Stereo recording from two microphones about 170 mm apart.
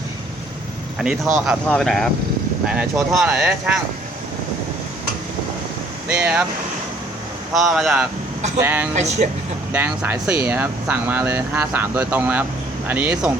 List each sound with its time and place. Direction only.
0.9 s speech: 5° right (ahead or behind)
6.1 s speech: 5° right (ahead or behind)
7.5 s speech: centre (ahead or behind)
9.0 s speech: 40° right (ahead or behind)
9.7 s speech: 10° right (ahead or behind)